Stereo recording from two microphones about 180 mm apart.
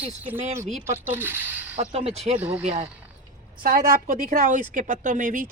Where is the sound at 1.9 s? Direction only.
35° right (ahead or behind).